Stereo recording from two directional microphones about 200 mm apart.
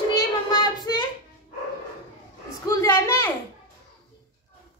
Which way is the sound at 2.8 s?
15° left (ahead or behind).